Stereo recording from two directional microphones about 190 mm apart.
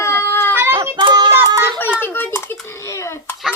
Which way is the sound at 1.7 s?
10° left (ahead or behind).